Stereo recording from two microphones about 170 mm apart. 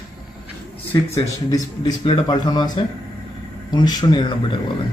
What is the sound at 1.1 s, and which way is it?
Speech, 20° left (ahead or behind).